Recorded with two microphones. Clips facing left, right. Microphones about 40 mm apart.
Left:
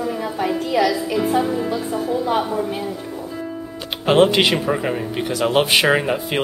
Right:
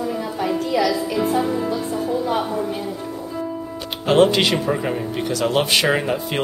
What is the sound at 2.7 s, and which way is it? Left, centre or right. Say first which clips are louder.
Music: left 1 dB; centre.